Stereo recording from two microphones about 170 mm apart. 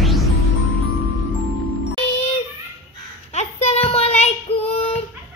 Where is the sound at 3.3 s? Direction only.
40° left (ahead or behind).